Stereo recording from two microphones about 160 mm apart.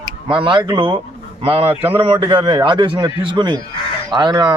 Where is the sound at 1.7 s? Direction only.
10° right (ahead or behind).